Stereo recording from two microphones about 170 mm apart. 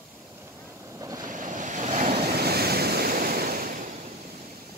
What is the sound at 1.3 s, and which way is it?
Waves, 50° right (ahead or behind).